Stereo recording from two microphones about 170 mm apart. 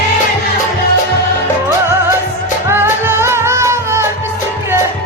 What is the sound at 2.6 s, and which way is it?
Music, 15° right (ahead or behind).